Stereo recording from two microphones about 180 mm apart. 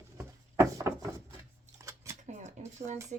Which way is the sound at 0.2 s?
15° right (ahead or behind).